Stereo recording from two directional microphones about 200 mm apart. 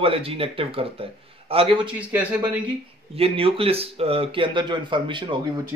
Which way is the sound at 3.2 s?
30° right (ahead or behind).